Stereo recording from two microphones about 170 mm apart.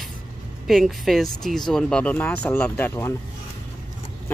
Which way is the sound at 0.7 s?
Centre (ahead or behind).